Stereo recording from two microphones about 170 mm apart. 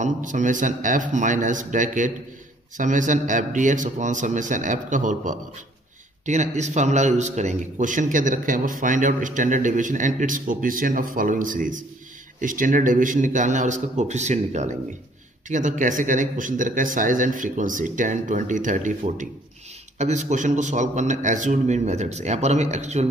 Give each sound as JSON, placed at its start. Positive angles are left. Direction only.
{"t": 0.0, "sound": "a man's voice", "side_deg": -50}